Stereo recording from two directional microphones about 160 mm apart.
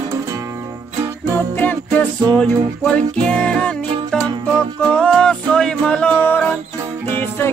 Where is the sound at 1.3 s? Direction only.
10° left (ahead or behind).